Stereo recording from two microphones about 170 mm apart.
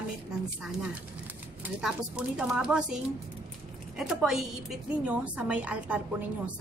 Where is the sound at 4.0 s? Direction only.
Centre (ahead or behind).